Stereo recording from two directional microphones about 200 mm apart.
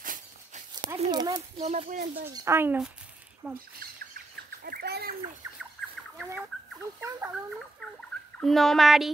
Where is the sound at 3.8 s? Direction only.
45° right (ahead or behind).